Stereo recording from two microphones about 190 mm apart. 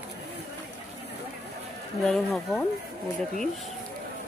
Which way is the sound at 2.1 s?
Centre (ahead or behind).